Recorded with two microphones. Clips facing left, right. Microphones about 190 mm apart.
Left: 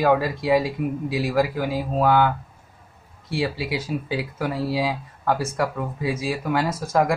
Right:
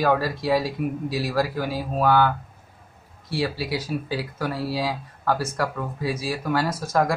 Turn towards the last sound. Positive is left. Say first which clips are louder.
# left 1 dB
turn(degrees=20)  # may be behind; listen again after turning